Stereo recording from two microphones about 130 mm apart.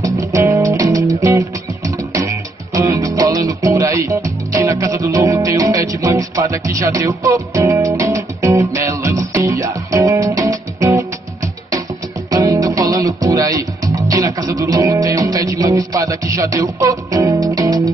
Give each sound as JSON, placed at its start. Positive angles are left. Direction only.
{"t": 0.0, "sound": "music", "side_deg": -25}
{"t": 12.3, "sound": "music", "side_deg": -25}